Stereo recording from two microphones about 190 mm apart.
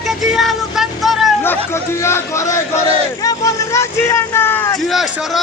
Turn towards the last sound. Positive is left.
turn(degrees=0)  # may be behind; listen again after turning